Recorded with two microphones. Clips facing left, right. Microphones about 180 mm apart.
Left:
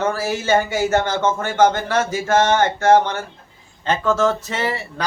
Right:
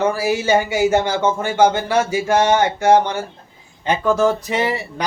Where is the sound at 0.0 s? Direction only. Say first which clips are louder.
Right 3 dB; 10° right (ahead or behind).